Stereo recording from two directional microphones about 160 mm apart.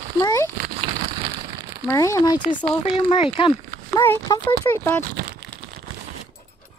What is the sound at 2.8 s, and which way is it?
Speech, 35° left (ahead or behind).